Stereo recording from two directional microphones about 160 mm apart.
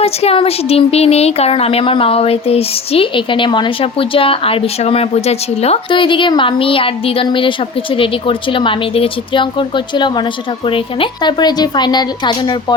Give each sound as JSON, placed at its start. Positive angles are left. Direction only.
{"t": 0.0, "sound": "a woman's voice", "side_deg": 40}